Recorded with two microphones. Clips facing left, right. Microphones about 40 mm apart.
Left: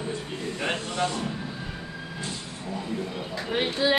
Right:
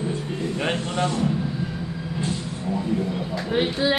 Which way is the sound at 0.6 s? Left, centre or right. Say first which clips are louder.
Right 2 dB; centre.